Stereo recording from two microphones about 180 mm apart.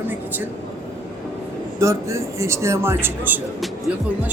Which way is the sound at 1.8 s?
15° right (ahead or behind).